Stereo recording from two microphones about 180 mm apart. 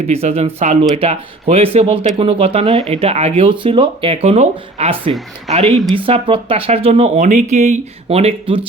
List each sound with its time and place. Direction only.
0.1 s speech: 35° right (ahead or behind)